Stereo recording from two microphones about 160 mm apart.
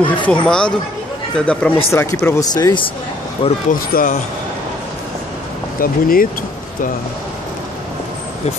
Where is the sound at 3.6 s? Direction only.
55° left (ahead or behind).